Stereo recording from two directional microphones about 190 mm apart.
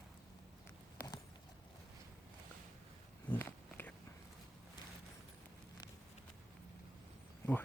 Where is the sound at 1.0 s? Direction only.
50° left (ahead or behind).